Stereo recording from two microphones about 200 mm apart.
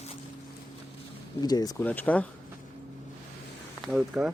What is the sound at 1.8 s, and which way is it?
Speech, 10° left (ahead or behind).